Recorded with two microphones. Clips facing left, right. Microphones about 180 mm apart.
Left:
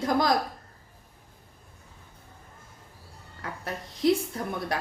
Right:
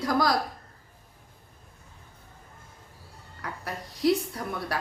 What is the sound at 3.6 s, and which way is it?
A woman's voice, 25° left (ahead or behind).